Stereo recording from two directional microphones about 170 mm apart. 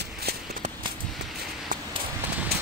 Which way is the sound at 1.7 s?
50° right (ahead or behind).